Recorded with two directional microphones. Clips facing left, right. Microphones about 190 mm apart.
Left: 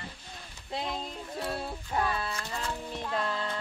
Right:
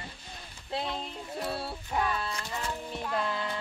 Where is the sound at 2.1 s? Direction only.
5° left (ahead or behind).